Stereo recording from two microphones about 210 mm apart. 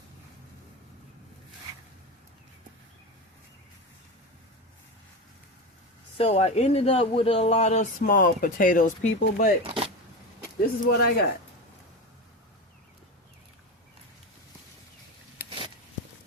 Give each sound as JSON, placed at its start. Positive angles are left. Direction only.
{"t": 6.1, "sound": "speech", "side_deg": 30}
{"t": 9.6, "sound": "a sound", "side_deg": -25}
{"t": 10.8, "sound": "speech", "side_deg": 45}